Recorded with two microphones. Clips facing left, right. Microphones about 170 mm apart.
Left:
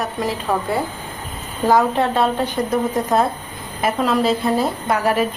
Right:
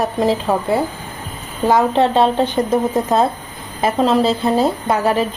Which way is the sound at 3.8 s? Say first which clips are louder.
Right 3 dB; 25° right (ahead or behind).